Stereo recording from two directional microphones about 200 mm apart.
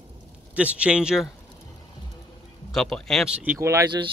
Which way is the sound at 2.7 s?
Centre (ahead or behind).